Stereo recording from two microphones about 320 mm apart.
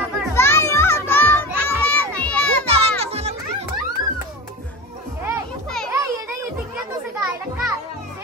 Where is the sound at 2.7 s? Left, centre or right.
Centre.